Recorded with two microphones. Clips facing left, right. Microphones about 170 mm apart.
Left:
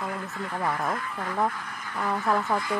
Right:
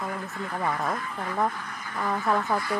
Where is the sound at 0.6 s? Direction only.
Centre (ahead or behind).